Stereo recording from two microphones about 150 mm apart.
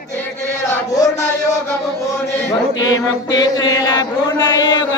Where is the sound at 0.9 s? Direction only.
25° left (ahead or behind).